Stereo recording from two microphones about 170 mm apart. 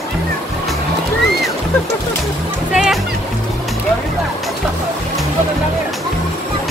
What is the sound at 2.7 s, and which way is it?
Music, 5° right (ahead or behind).